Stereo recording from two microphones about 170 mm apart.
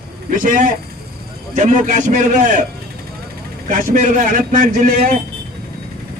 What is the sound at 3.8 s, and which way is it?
A man's voice, 50° right (ahead or behind).